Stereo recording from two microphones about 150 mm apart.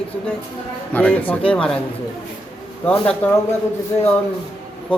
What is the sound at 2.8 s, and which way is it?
Speech, 10° left (ahead or behind).